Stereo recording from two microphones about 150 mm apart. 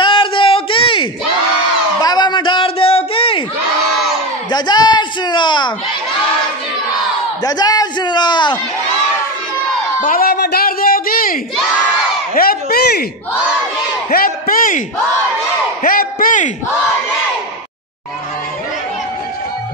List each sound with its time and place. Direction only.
0.0 s a sound: 35° left (ahead or behind)
4.5 s speech: 30° left (ahead or behind)
7.4 s a man's voice: 25° left (ahead or behind)
10.0 s a woman's voice: 80° left
12.4 s a man's voice: 85° left
14.1 s a sound: 75° left (ahead or behind)
15.8 s a man's voice: 70° left (ahead or behind)